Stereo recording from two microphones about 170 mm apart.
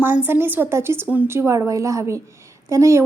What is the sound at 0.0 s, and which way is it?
Speech, 10° right (ahead or behind).